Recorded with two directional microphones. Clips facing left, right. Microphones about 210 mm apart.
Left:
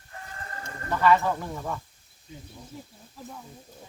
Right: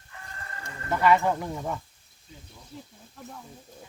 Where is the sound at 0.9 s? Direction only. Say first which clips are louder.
Even; 15° right (ahead or behind).